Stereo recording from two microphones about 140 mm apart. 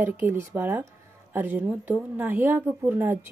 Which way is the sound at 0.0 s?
15° right (ahead or behind).